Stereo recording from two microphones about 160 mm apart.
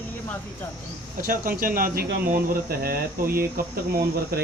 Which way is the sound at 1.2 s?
60° right (ahead or behind).